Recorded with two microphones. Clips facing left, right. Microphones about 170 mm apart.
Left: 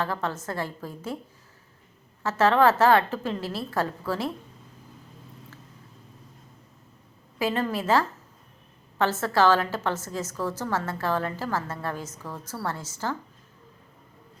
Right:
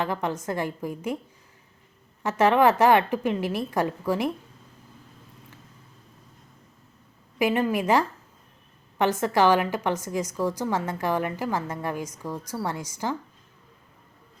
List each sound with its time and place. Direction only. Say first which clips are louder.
0.0 s a woman's voice: right 2 dB; 15° right (ahead or behind)
2.2 s a woman's voice: right 1 dB; 15° right (ahead or behind)
7.3 s a woman's voice: right 3 dB; 15° right (ahead or behind)